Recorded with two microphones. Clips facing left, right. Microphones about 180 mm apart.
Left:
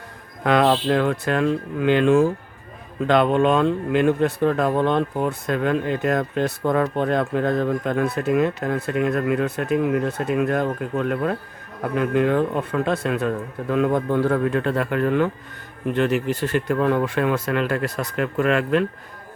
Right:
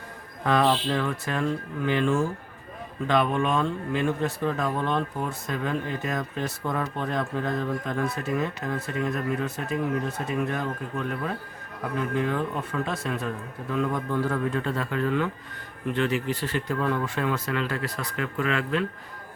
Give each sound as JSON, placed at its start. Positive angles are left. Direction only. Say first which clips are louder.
{"t": 0.4, "sound": "speech", "louder": "left 5 dB", "side_deg": 70}